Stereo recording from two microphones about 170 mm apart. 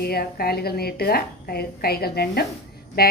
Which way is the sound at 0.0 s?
65° left (ahead or behind).